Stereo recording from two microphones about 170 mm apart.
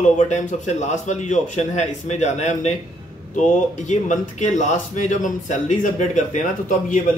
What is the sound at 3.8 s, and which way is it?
Speech, 45° left (ahead or behind).